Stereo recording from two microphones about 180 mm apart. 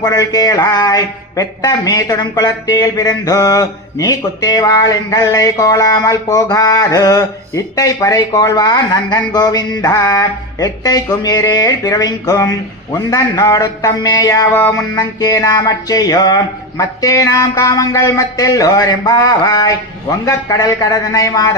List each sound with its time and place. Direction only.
0.0 s speech: 20° left (ahead or behind)